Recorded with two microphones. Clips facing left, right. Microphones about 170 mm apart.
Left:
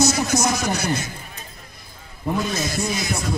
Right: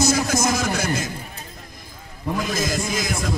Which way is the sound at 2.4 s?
90° right.